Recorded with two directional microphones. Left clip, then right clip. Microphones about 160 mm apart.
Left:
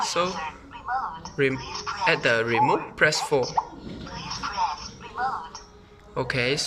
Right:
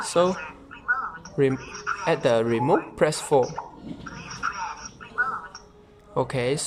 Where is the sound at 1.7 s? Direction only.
30° left (ahead or behind).